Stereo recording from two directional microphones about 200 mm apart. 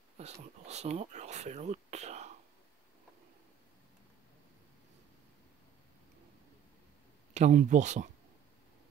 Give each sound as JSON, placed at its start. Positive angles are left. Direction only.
{"t": 0.2, "sound": "speech", "side_deg": -35}
{"t": 7.3, "sound": "speech", "side_deg": -35}